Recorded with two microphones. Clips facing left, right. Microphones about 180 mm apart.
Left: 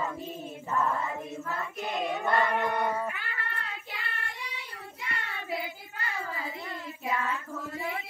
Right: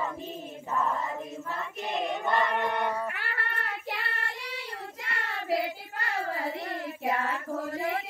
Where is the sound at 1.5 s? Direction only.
Centre (ahead or behind).